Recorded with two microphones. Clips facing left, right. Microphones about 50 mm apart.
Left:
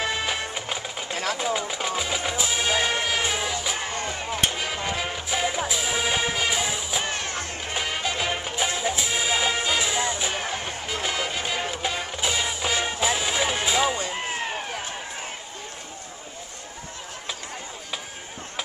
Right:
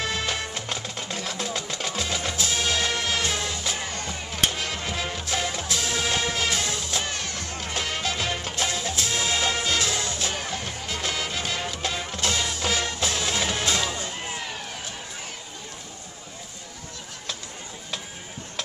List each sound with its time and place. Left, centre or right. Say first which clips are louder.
0.0 s music: left 1 dB; centre
4.5 s music: left 2 dB; centre
7.1 s music: left 2 dB; left
7.7 s music: left 1 dB; centre
10.3 s music: left 2 dB; left
10.9 s music: left 2 dB; centre
14.3 s run: left 4 dB; left